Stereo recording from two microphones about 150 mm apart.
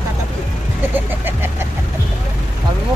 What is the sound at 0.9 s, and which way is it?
Vehicle, 15° right (ahead or behind).